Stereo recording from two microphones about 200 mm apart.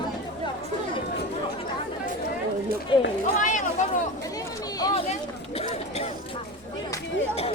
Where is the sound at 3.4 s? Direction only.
40° left (ahead or behind).